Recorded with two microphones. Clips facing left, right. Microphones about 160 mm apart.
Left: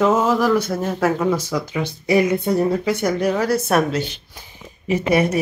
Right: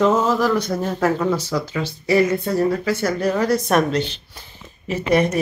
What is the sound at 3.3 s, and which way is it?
A woman's voice, 5° left (ahead or behind).